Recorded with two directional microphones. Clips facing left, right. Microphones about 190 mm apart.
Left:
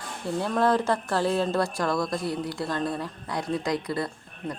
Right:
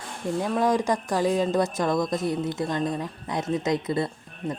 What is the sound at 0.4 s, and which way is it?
Speech, 15° right (ahead or behind).